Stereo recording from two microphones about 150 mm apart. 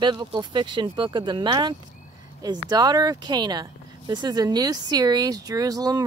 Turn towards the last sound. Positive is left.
turn(degrees=-25)  # may be behind; listen again after turning